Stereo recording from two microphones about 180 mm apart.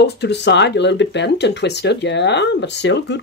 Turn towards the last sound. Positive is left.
turn(degrees=75)  # may be behind; listen again after turning